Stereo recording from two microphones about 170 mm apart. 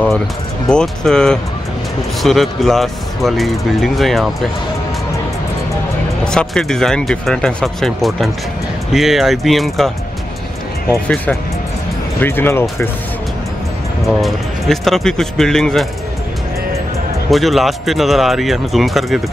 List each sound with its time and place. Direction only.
0.7 s speech: 5° left (ahead or behind)
6.2 s speech: 5° left (ahead or behind)
10.9 s speech: 5° left (ahead or behind)
14.0 s speech: centre (ahead or behind)
17.3 s speech: centre (ahead or behind)